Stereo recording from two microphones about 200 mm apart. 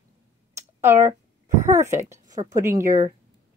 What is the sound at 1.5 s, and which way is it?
A woman's voice, 35° right (ahead or behind).